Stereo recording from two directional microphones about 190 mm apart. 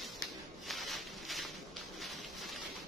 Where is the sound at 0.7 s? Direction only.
Centre (ahead or behind).